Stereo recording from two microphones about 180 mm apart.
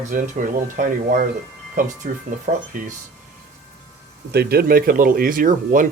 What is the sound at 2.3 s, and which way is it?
Speech, 45° right (ahead or behind).